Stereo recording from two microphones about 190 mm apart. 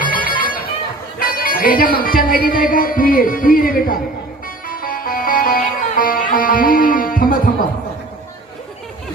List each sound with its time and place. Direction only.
0.0 s music: 50° left (ahead or behind)